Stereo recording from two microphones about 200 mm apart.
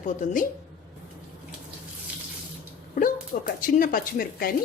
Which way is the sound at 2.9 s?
45° left (ahead or behind).